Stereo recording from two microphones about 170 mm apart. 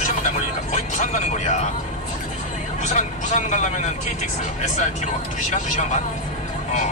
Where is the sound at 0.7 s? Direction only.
45° left (ahead or behind).